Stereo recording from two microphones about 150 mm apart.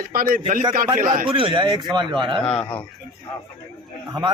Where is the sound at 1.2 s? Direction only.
35° right (ahead or behind).